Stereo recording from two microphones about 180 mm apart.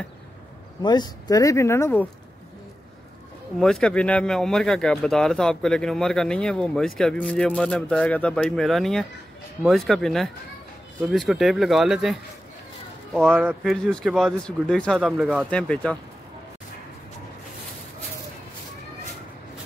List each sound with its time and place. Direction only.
0.8 s speech: 25° left (ahead or behind)
3.5 s speech: centre (ahead or behind)
13.3 s speech: 10° right (ahead or behind)
13.7 s speech: 5° left (ahead or behind)